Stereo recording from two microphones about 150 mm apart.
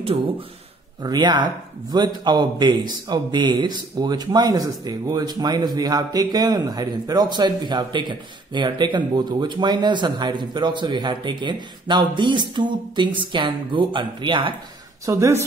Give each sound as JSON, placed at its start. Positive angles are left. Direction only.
{"t": 1.0, "sound": "a man's voice", "side_deg": -30}
{"t": 15.0, "sound": "a man's voice", "side_deg": -20}